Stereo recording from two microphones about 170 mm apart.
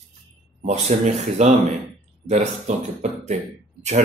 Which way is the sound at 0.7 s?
40° right (ahead or behind).